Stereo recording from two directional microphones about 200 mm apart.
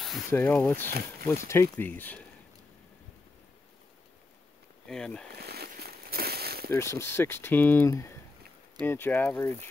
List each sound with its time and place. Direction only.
0.3 s speech: 5° left (ahead or behind)
4.8 s speech: 5° left (ahead or behind)
5.4 s a sound: 50° right (ahead or behind)
6.7 s speech: 15° left (ahead or behind)